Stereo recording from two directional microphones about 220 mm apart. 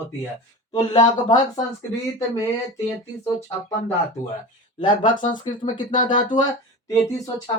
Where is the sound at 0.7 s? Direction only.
20° left (ahead or behind).